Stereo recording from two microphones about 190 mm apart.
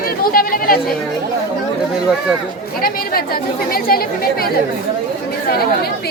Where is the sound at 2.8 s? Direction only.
50° left (ahead or behind).